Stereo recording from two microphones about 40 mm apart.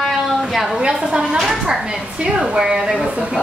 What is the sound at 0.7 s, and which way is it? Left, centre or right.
Speech, centre.